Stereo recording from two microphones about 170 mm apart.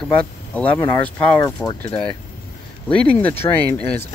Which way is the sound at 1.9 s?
30° left (ahead or behind).